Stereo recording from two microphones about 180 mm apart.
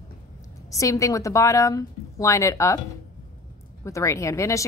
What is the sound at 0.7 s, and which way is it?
A woman's voice, 15° left (ahead or behind).